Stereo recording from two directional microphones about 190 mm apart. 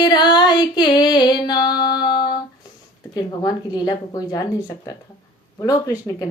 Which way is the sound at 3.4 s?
20° left (ahead or behind).